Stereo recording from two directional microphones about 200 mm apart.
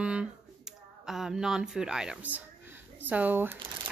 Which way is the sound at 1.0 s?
Centre (ahead or behind).